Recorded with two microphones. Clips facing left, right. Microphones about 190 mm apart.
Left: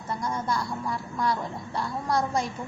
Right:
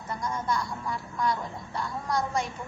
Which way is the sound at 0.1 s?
30° left (ahead or behind).